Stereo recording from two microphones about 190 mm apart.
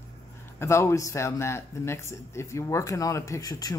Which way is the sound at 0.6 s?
15° left (ahead or behind).